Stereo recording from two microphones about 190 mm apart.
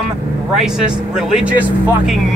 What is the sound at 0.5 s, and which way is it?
Speech, 5° right (ahead or behind).